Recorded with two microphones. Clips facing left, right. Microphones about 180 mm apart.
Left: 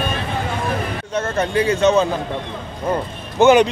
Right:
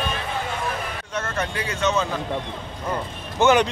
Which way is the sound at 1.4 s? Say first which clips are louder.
Left 10 dB; 30° left (ahead or behind).